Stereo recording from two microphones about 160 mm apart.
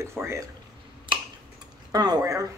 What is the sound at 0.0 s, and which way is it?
Speech, 15° right (ahead or behind).